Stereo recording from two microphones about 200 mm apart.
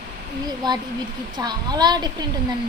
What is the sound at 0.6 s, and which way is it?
Speech, 20° right (ahead or behind).